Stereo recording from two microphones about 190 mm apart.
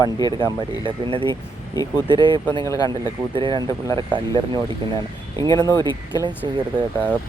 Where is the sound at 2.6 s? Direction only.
15° left (ahead or behind).